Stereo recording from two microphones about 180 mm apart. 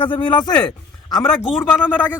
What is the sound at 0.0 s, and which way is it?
Speech, 30° left (ahead or behind).